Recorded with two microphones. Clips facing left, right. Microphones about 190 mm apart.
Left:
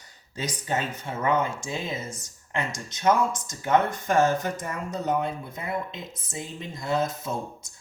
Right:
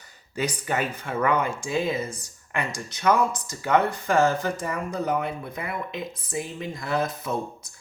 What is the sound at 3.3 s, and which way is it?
Speech, 65° right (ahead or behind).